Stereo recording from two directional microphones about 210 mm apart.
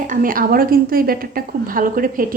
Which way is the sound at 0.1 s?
40° right (ahead or behind).